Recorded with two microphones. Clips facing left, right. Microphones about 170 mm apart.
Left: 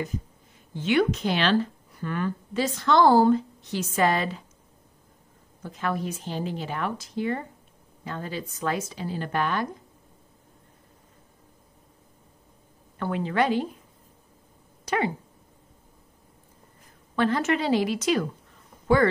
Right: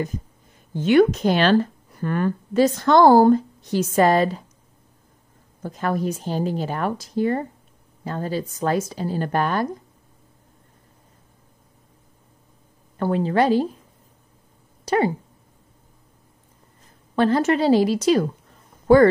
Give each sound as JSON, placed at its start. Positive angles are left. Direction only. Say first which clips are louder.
{"t": 0.7, "sound": "speech", "louder": "right 7 dB", "side_deg": -45}
{"t": 5.6, "sound": "speech", "louder": "right 5 dB", "side_deg": -40}
{"t": 12.9, "sound": "speech", "louder": "right 6 dB", "side_deg": -35}
{"t": 14.9, "sound": "speech", "louder": "right 6 dB", "side_deg": -35}
{"t": 17.1, "sound": "speech", "louder": "right 5 dB", "side_deg": -35}